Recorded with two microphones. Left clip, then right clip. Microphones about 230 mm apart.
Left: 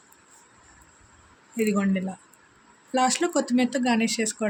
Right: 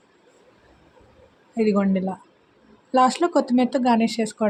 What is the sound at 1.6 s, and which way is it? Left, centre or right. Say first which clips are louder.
A woman's voice: right 4 dB; centre.